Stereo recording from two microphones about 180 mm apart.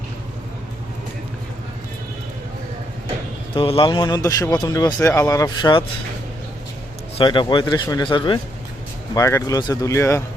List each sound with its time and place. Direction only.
3.5 s speech: 30° left (ahead or behind)
7.2 s speech: 25° left (ahead or behind)